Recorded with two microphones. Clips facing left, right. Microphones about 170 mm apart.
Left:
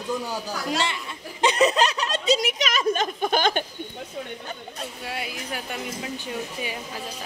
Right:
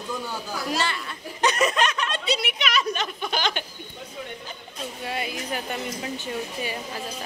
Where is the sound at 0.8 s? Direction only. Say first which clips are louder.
Even; 25° left (ahead or behind); by 3.7 s 50° left (ahead or behind).